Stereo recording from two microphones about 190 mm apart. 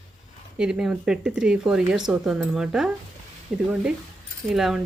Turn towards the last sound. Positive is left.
turn(degrees=0)  # may be behind; listen again after turning